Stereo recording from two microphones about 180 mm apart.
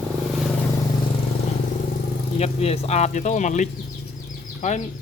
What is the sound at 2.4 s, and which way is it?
Speech, 35° left (ahead or behind).